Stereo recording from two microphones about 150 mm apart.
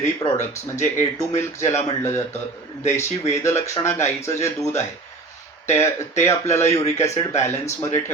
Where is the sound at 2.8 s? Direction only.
50° left (ahead or behind).